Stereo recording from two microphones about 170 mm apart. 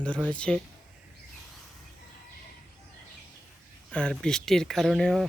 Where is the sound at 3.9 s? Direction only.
5° left (ahead or behind).